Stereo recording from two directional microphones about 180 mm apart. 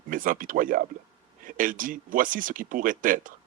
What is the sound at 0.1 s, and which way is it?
Speech, 50° right (ahead or behind).